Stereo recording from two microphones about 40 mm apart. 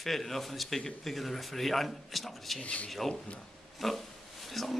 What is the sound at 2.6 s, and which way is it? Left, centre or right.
Speech, left.